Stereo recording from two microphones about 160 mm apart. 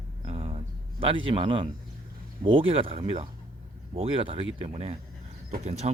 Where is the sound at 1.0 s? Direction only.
35° right (ahead or behind).